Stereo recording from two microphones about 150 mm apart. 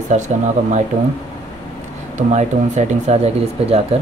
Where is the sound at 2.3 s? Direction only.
50° right (ahead or behind).